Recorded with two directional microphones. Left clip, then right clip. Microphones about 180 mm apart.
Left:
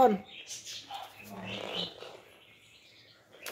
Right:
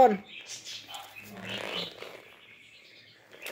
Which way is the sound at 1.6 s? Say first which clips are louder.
Right 1 dB; 40° right (ahead or behind).